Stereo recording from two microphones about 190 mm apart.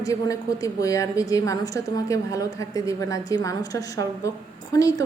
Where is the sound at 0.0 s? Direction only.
20° left (ahead or behind).